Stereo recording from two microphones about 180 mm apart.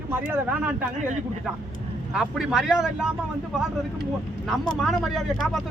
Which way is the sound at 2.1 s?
5° right (ahead or behind).